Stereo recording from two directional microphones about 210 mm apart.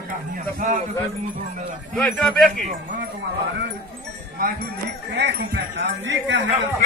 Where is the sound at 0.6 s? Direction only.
35° right (ahead or behind).